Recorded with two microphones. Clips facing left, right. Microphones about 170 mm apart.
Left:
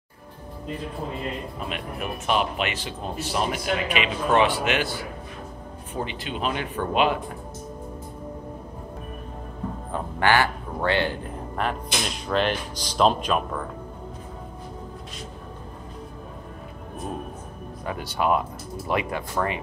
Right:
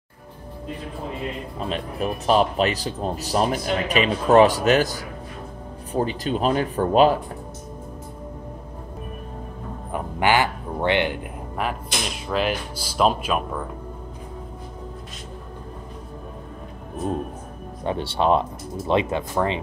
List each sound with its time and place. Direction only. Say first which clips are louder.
1.6 s speech: right 5 dB; 35° right (ahead or behind)
9.9 s a sound: right 1 dB; 15° right (ahead or behind)
12.3 s speech: even; 5° right (ahead or behind)
17.8 s speech: right 4 dB; 30° right (ahead or behind)